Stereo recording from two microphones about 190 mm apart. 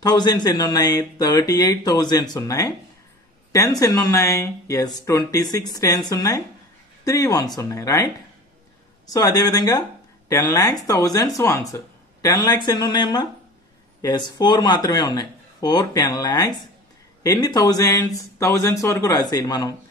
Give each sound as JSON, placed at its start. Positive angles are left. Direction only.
{"t": 0.0, "sound": "speech", "side_deg": 20}
{"t": 3.8, "sound": "speech", "side_deg": 15}